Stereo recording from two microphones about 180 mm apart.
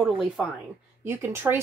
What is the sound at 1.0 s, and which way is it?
Speech, 15° right (ahead or behind).